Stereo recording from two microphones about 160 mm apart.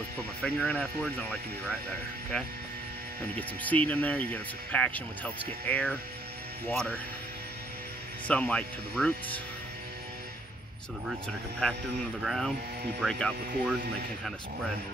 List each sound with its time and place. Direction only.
0.4 s speech: 5° left (ahead or behind)
3.3 s speech: 10° left (ahead or behind)
8.3 s speech: 10° left (ahead or behind)
12.2 s speech: centre (ahead or behind)